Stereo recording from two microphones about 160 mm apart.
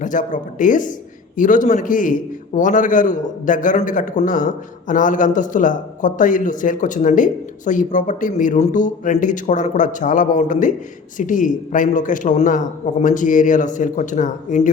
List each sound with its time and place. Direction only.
0.0 s a man's voice: 55° left (ahead or behind)